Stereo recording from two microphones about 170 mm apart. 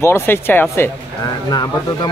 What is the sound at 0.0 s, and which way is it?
Speech, 15° left (ahead or behind).